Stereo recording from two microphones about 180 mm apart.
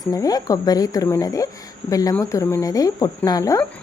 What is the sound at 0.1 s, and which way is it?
A woman's voice, 20° left (ahead or behind).